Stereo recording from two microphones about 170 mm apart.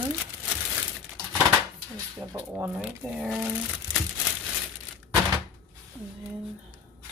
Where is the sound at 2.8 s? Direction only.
5° right (ahead or behind).